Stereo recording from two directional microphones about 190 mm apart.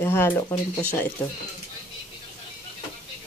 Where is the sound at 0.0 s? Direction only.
10° left (ahead or behind).